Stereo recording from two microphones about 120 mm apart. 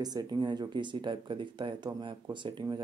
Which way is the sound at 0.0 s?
35° right (ahead or behind).